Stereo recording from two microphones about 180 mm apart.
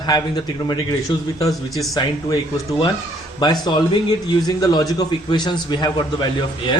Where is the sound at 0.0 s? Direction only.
20° left (ahead or behind).